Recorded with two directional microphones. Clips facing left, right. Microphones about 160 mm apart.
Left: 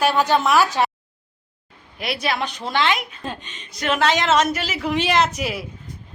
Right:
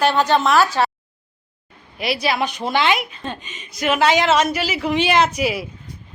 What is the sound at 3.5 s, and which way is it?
A woman's voice, 10° right (ahead or behind).